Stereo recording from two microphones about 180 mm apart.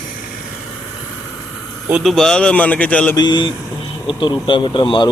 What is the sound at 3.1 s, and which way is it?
A man's voice, 25° left (ahead or behind).